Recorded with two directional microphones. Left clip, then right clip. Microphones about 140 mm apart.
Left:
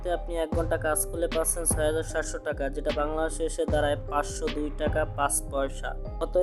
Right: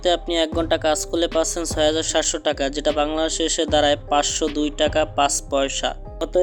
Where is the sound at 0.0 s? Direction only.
15° right (ahead or behind).